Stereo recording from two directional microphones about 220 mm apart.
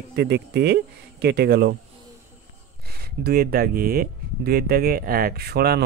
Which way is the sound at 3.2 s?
45° right (ahead or behind).